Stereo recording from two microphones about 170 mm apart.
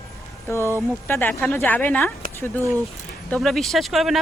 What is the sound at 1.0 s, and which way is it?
Speech, 10° left (ahead or behind).